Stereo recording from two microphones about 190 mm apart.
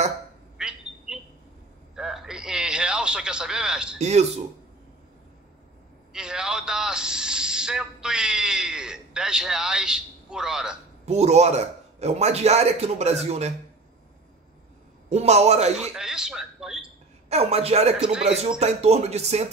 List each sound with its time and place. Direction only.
0.6 s squawk: 5° right (ahead or behind)
2.0 s a sound: centre (ahead or behind)
4.0 s a man's voice: 35° right (ahead or behind)
6.1 s a man's voice: 5° right (ahead or behind)
11.1 s a man's voice: 35° right (ahead or behind)
15.0 s a man's voice: 35° right (ahead or behind)
16.0 s speech: 5° right (ahead or behind)
17.3 s a man's voice: 30° right (ahead or behind)